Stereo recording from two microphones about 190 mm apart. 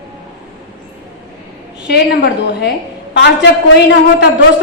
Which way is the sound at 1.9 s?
60° left (ahead or behind).